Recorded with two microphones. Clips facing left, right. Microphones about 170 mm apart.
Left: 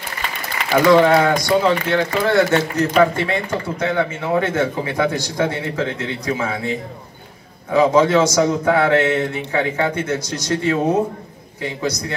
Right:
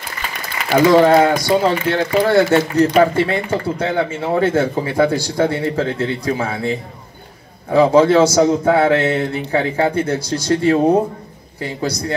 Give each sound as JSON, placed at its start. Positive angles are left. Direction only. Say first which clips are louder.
{"t": 0.7, "sound": "speech", "louder": "right 2 dB", "side_deg": -35}